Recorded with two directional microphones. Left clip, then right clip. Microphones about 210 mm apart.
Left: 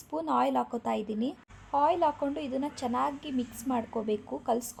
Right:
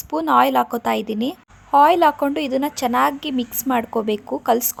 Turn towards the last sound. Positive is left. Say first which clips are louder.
# right 12 dB
turn(degrees=-25)  # may be behind; listen again after turning